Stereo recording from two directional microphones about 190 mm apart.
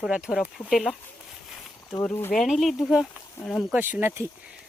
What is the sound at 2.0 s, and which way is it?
Speech, 10° left (ahead or behind).